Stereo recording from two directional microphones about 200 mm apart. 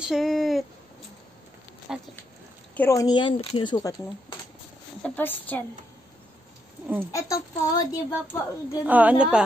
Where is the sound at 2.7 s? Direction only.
10° left (ahead or behind).